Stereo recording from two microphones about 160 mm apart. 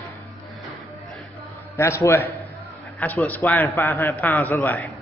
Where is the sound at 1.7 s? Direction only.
15° left (ahead or behind).